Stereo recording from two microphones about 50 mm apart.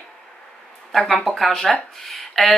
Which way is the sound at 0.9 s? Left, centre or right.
Centre.